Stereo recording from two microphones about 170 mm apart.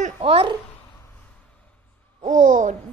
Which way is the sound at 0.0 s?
35° right (ahead or behind).